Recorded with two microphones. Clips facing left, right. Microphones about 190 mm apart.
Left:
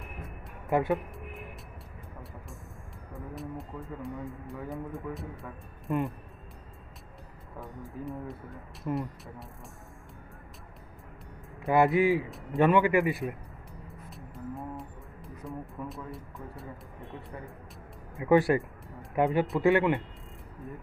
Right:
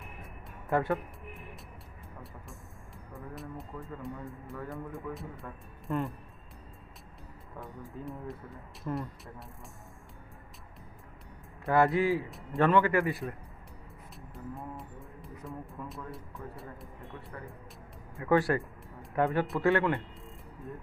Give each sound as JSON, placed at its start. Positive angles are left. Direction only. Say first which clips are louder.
{"t": 0.7, "sound": "a man's voice", "louder": "left 2 dB", "side_deg": 15}
{"t": 3.1, "sound": "a sound", "louder": "left 3 dB", "side_deg": 0}
{"t": 4.6, "sound": "a man's voice", "louder": "left 3 dB", "side_deg": 0}
{"t": 8.0, "sound": "a man's voice", "louder": "left 3 dB", "side_deg": 0}
{"t": 8.8, "sound": "a man's voice", "louder": "left 3 dB", "side_deg": 10}
{"t": 11.6, "sound": "a man's voice", "louder": "left 2 dB", "side_deg": 15}
{"t": 14.1, "sound": "music", "louder": "left 3 dB", "side_deg": 0}
{"t": 15.9, "sound": "a man's voice", "louder": "left 2 dB", "side_deg": 0}
{"t": 18.1, "sound": "a man's voice", "louder": "left 4 dB", "side_deg": 15}